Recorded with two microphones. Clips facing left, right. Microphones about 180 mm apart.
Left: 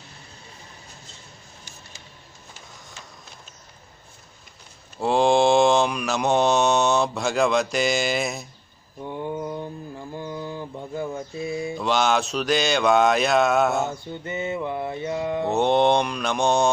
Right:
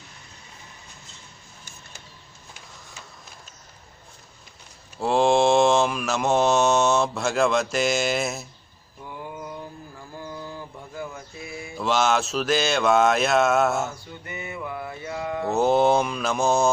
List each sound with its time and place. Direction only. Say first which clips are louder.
4.9 s mantra: left 1 dB; centre (ahead or behind)
9.0 s mantra: left 7 dB; 25° left (ahead or behind)
11.8 s mantra: right 1 dB; centre (ahead or behind)
14.2 s mantra: left 7 dB; 25° left (ahead or behind)
15.5 s mantra: even; 5° right (ahead or behind)